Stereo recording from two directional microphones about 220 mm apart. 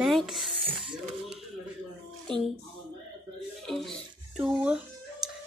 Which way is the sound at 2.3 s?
20° right (ahead or behind).